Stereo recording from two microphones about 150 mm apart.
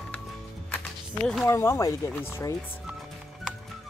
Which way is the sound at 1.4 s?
20° left (ahead or behind).